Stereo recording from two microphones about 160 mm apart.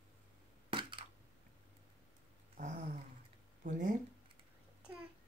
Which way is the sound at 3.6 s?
55° right (ahead or behind).